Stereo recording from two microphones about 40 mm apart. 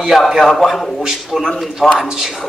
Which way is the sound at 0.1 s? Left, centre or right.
Centre.